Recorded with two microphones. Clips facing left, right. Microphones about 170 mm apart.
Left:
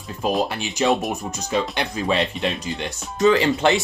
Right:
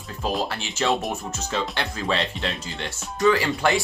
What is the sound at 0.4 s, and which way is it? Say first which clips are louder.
Speech: left 4 dB; 15° left (ahead or behind).